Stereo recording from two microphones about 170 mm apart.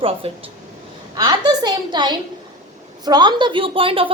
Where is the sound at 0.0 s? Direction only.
30° right (ahead or behind).